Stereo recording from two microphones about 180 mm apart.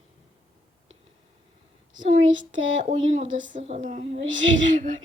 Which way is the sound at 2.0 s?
40° right (ahead or behind).